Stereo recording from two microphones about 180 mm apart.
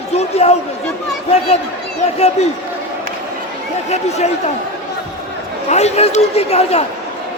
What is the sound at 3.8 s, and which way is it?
Speech, 40° left (ahead or behind).